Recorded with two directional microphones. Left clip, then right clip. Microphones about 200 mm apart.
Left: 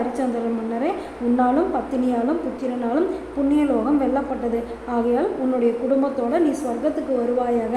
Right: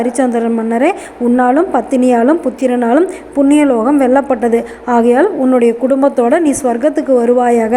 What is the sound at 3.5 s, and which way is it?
A woman's voice, 40° right (ahead or behind).